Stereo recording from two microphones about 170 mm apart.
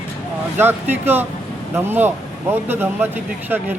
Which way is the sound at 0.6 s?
10° right (ahead or behind).